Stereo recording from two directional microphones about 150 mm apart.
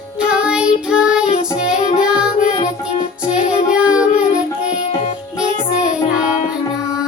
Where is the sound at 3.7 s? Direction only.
5° right (ahead or behind).